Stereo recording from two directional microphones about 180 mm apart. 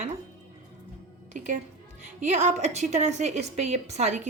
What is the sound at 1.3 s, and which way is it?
A woman's voice, 40° right (ahead or behind).